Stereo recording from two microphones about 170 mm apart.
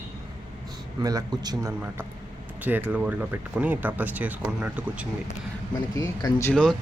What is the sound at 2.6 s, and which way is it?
Speech, 10° right (ahead or behind).